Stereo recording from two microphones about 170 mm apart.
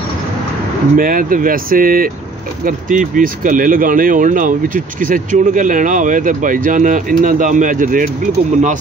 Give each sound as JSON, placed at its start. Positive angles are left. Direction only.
{"t": 0.9, "sound": "speech", "side_deg": -55}